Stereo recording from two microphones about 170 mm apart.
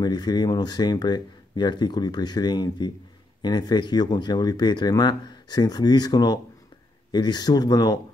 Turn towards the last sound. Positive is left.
turn(degrees=25)  # may be behind; listen again after turning